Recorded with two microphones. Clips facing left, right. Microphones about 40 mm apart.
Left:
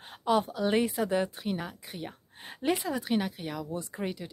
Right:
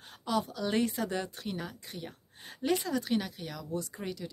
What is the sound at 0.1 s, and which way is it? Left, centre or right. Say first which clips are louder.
Speech: left 5 dB; left.